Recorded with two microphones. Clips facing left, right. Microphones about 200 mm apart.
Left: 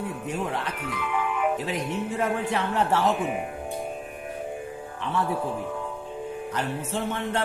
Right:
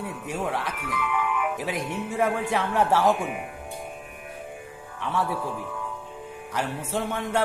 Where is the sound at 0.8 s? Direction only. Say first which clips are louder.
Even; 30° left (ahead or behind).